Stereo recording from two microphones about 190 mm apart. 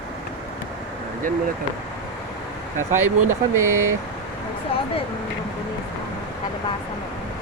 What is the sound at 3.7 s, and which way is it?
Speech, 90° right.